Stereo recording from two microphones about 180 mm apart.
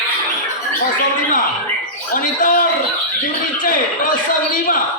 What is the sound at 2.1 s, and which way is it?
A man's voice, 50° left (ahead or behind).